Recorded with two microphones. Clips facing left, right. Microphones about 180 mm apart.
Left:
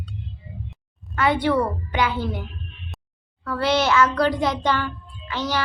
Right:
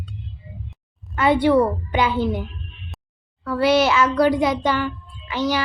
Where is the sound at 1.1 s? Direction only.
20° right (ahead or behind).